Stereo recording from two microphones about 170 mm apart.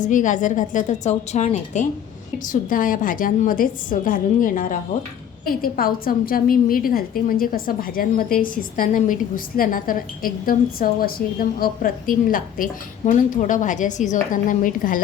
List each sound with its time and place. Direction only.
0.0 s a woman's voice: 50° left (ahead or behind)